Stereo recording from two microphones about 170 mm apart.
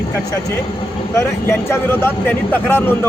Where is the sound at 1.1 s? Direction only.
15° left (ahead or behind).